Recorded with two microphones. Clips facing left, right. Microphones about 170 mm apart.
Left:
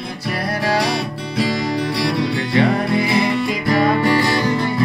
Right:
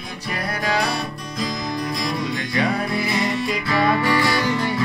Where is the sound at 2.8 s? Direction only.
75° left (ahead or behind).